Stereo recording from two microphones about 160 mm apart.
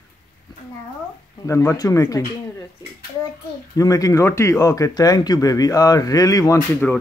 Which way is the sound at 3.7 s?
20° left (ahead or behind).